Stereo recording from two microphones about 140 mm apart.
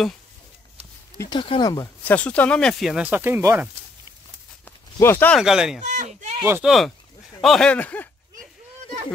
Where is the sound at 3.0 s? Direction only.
15° right (ahead or behind).